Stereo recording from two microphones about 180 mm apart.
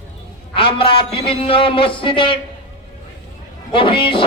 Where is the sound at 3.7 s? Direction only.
30° left (ahead or behind).